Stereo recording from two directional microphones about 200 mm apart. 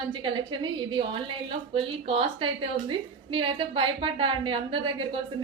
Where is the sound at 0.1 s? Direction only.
25° right (ahead or behind).